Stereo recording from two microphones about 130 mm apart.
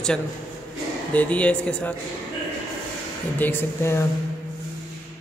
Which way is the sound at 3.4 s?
15° left (ahead or behind).